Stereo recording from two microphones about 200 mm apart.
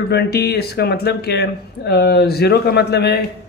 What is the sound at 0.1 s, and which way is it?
Speech, 55° left (ahead or behind).